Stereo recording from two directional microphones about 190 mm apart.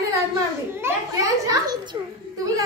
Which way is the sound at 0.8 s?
15° right (ahead or behind).